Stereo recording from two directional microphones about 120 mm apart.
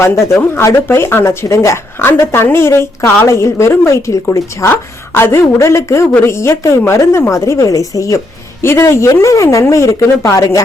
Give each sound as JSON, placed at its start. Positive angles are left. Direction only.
{"t": 0.3, "sound": "speech", "side_deg": 20}